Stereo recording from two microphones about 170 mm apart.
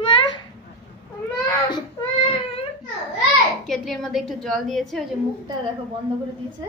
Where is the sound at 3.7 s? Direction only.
Centre (ahead or behind).